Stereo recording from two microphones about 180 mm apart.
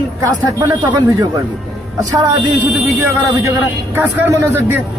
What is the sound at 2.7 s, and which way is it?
A man's voice, 15° right (ahead or behind).